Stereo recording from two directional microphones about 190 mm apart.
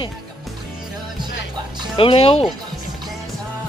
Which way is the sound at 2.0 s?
30° left (ahead or behind).